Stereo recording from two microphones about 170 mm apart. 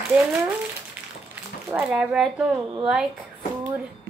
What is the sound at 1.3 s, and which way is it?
Speech, 10° right (ahead or behind).